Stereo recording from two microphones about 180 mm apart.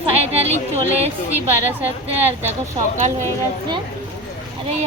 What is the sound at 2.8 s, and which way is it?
Speech, 35° right (ahead or behind).